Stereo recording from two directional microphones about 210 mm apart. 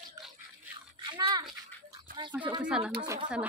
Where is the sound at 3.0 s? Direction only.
20° right (ahead or behind).